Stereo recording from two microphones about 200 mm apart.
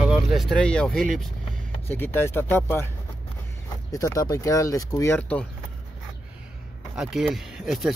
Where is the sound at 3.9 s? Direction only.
15° left (ahead or behind).